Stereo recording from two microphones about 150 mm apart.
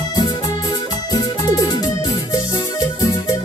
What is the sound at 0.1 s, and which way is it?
Music, 25° left (ahead or behind).